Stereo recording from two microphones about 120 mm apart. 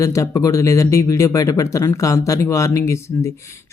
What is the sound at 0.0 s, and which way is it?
Speech, 25° left (ahead or behind).